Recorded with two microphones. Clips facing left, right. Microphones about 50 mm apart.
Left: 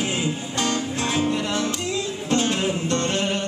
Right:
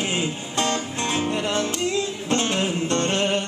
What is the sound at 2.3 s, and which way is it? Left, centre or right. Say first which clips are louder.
Music: left 1 dB; centre.